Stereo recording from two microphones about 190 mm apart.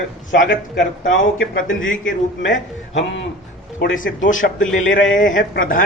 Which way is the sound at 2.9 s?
70° left (ahead or behind).